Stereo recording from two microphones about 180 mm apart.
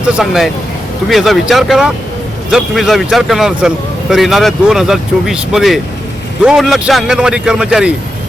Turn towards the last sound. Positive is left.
turn(degrees=-5)  # may be behind; listen again after turning